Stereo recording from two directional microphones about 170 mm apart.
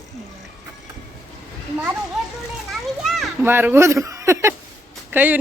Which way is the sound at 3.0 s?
Centre (ahead or behind).